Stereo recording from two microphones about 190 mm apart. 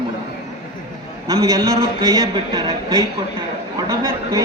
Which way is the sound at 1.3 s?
20° right (ahead or behind).